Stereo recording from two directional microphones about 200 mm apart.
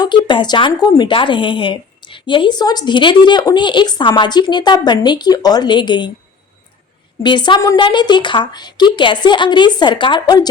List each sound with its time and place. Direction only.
0.0 s a woman's voice: 25° left (ahead or behind)
7.2 s a woman's voice: 20° left (ahead or behind)